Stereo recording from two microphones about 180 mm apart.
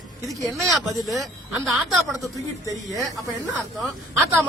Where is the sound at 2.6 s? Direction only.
20° right (ahead or behind).